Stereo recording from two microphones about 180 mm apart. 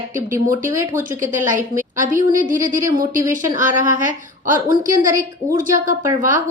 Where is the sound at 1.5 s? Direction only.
45° right (ahead or behind).